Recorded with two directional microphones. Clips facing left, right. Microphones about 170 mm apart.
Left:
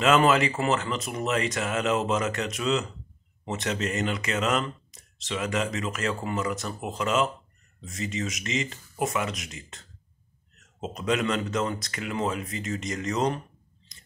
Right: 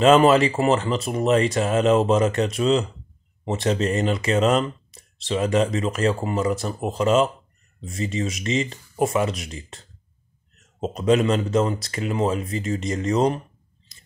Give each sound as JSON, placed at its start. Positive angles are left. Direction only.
{"t": 0.0, "sound": "speech", "side_deg": -30}